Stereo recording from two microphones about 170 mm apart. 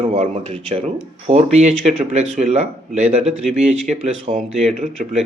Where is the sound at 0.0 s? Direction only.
35° right (ahead or behind).